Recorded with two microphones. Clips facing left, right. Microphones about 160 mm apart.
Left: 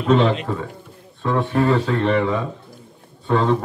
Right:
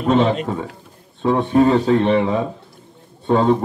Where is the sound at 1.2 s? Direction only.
20° right (ahead or behind).